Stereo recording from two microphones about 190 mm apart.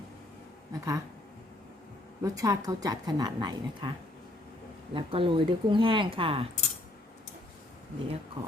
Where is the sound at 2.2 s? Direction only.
15° right (ahead or behind).